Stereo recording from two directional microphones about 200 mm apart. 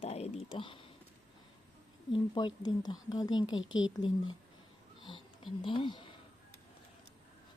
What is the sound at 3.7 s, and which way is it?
Speech, 75° left (ahead or behind).